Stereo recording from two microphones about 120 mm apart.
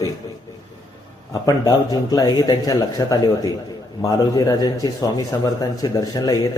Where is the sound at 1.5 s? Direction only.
30° left (ahead or behind).